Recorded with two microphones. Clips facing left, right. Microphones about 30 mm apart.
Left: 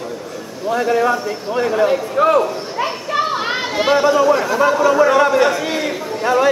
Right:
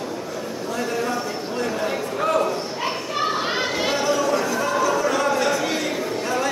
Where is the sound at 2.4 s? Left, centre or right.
Centre.